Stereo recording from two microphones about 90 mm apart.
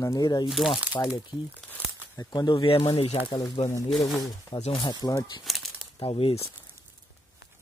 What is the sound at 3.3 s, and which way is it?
Speech, 60° left (ahead or behind).